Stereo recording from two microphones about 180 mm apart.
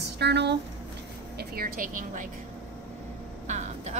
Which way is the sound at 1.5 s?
55° right (ahead or behind).